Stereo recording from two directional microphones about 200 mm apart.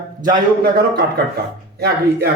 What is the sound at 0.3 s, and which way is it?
Speech, 45° right (ahead or behind).